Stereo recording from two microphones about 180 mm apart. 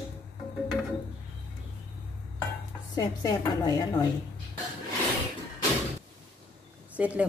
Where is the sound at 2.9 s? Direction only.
20° left (ahead or behind).